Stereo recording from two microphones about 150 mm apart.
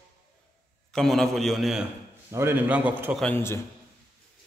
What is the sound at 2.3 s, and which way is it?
Speech, 15° right (ahead or behind).